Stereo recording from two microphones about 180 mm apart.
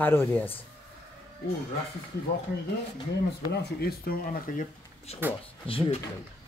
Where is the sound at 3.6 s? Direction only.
60° left (ahead or behind).